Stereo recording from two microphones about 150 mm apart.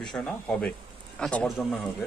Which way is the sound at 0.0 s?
5° left (ahead or behind).